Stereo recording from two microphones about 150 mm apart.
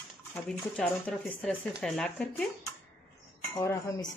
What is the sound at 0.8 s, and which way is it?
Speech, 5° left (ahead or behind).